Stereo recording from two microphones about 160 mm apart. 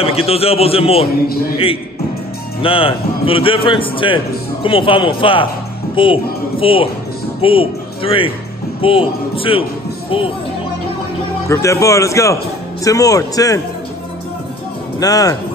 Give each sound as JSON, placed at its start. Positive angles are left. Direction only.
{"t": 0.0, "sound": "a man's voice", "side_deg": 40}
{"t": 2.6, "sound": "a man's voice", "side_deg": 35}
{"t": 11.4, "sound": "speech", "side_deg": 20}
{"t": 15.0, "sound": "speech", "side_deg": 25}